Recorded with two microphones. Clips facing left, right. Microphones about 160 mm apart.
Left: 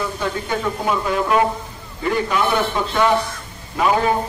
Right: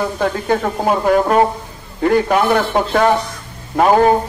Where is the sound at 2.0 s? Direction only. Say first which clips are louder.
Right 6 dB; 60° right (ahead or behind).